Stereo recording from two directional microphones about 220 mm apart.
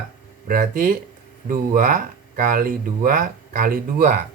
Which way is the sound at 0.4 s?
40° right (ahead or behind).